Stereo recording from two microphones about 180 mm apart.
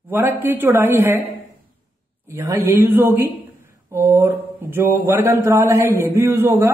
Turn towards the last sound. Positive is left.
turn(degrees=-15)  # may be behind; listen again after turning